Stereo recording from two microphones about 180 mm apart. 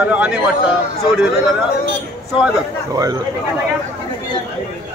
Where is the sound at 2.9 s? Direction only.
20° right (ahead or behind).